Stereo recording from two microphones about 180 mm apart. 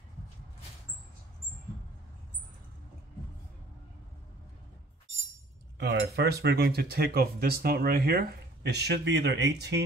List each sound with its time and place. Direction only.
5.8 s speech: 70° right (ahead or behind)